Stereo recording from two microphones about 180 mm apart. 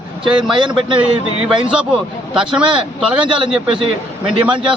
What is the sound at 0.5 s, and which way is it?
Speech, 25° right (ahead or behind).